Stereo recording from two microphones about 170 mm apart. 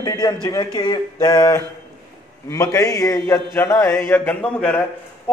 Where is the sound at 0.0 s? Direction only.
25° left (ahead or behind).